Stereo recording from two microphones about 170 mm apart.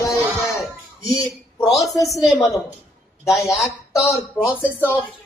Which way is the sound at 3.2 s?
15° left (ahead or behind).